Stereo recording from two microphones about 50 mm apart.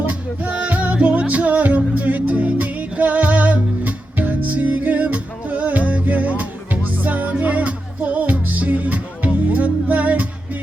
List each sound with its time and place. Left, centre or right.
0.0 s music: right